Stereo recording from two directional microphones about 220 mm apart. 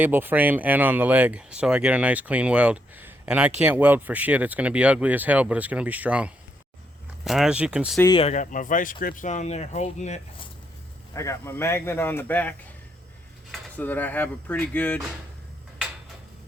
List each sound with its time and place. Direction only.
0.0 s speech: 10° right (ahead or behind)
7.9 s speech: 15° left (ahead or behind)
8.2 s speech: 35° left (ahead or behind)
11.1 s speech: 15° left (ahead or behind)